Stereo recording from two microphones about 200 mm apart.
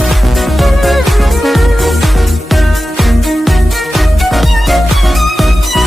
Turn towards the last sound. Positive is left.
turn(degrees=0)  # may be behind; listen again after turning